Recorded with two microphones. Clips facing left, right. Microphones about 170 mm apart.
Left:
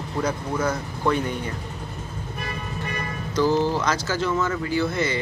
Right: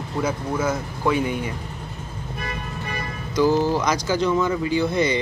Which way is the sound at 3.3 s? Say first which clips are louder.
Right 2 dB; 10° right (ahead or behind).